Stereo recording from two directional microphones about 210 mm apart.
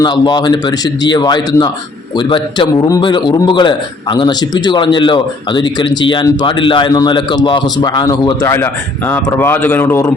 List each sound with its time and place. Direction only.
0.0 s a man's voice: 20° left (ahead or behind)